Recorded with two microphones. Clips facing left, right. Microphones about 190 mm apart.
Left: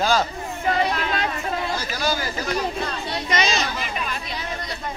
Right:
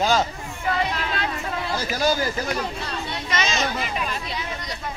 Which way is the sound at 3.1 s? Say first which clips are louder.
Left 3 dB; 35° left (ahead or behind).